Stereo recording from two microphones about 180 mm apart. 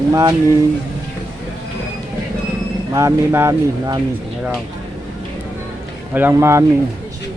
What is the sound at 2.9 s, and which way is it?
Speech, 15° right (ahead or behind).